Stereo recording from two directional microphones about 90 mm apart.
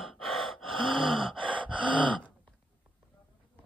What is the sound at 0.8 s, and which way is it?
Gasp, 70° right (ahead or behind).